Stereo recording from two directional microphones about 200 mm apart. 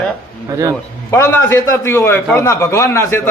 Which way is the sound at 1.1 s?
10° left (ahead or behind).